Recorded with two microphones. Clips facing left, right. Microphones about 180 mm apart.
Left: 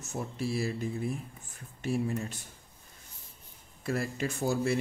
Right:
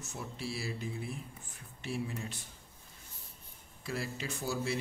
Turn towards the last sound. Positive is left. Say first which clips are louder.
# left 7 dB
turn(degrees=50)  # may be behind; listen again after turning